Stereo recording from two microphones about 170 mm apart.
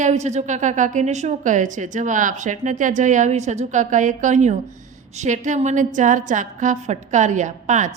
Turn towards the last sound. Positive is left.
turn(degrees=-45)  # may be behind; listen again after turning